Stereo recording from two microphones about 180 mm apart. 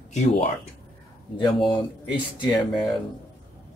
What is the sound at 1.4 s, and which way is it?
Speech, 25° left (ahead or behind).